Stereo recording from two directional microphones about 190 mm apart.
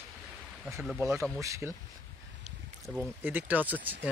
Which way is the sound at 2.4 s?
5° right (ahead or behind).